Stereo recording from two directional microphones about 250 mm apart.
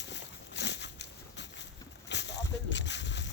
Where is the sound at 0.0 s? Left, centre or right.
Left.